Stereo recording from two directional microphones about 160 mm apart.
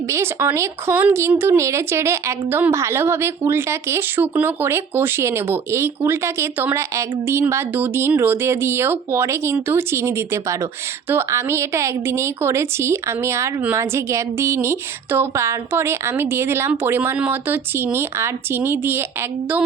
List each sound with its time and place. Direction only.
0.1 s a woman's voice: 15° right (ahead or behind)